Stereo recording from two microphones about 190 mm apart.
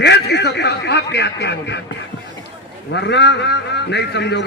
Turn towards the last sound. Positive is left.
turn(degrees=65)  # may be behind; listen again after turning